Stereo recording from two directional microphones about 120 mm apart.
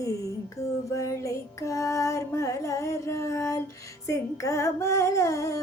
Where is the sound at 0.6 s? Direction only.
25° left (ahead or behind).